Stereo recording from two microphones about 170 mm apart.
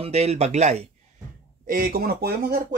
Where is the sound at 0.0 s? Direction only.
40° right (ahead or behind).